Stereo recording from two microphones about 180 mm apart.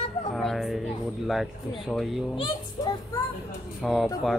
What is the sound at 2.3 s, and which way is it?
Speech, 30° left (ahead or behind).